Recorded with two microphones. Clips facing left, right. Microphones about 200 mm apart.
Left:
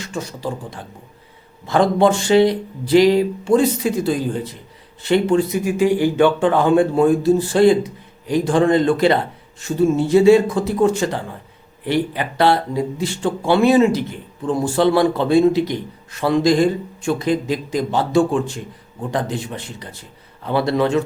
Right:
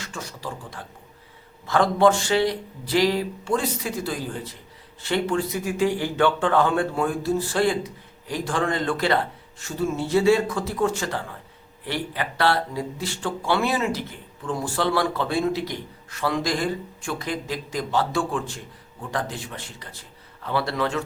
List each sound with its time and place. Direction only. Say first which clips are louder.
0.0 s speech: left 8 dB; 20° left (ahead or behind)